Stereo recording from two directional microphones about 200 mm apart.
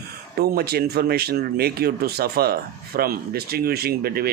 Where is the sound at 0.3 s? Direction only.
50° right (ahead or behind).